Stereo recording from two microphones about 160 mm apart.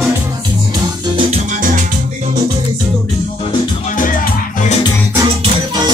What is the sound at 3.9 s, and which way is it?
Music, 55° left (ahead or behind).